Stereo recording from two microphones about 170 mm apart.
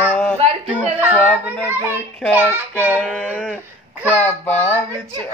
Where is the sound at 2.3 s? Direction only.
10° right (ahead or behind).